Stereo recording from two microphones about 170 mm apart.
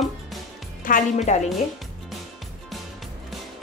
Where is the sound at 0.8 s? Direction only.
50° left (ahead or behind).